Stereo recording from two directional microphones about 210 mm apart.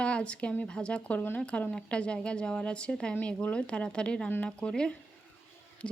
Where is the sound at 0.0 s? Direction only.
5° left (ahead or behind).